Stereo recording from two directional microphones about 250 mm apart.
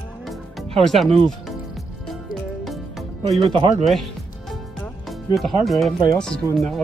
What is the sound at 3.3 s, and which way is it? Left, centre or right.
Speech, right.